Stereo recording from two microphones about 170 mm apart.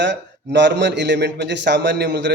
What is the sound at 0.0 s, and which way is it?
A man's voice, 90° right.